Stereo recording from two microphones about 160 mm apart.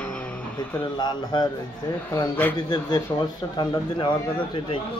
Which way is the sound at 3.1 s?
25° left (ahead or behind).